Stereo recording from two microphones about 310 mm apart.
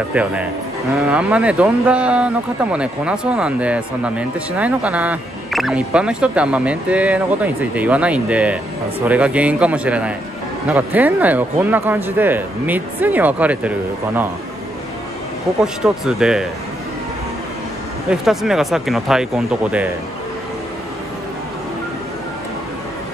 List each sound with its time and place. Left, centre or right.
0.1 s speech: centre
15.6 s speech: centre
18.1 s speech: centre